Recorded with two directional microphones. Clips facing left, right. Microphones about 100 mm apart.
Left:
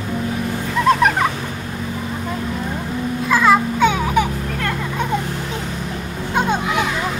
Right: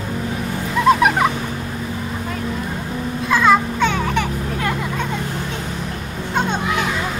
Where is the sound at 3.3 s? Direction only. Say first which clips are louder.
Even; centre (ahead or behind).